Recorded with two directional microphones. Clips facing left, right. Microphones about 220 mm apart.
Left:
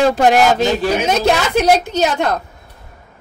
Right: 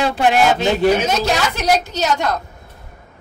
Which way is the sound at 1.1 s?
55° left (ahead or behind).